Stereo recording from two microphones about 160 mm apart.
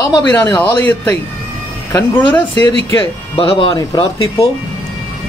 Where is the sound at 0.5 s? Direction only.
10° left (ahead or behind).